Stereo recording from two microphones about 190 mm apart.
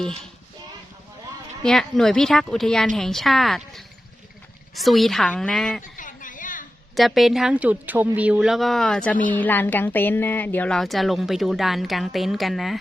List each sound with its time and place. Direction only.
1.6 s a woman's voice: centre (ahead or behind)
6.0 s a sound: 45° left (ahead or behind)
6.9 s a woman's voice: centre (ahead or behind)